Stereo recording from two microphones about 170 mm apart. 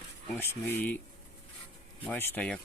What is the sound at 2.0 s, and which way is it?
Speech, 10° left (ahead or behind).